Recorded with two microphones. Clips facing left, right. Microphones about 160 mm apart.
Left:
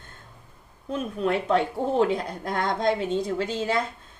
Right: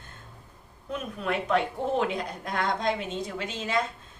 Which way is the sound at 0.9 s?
30° left (ahead or behind).